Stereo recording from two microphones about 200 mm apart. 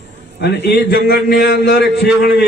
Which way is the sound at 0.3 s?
60° left (ahead or behind).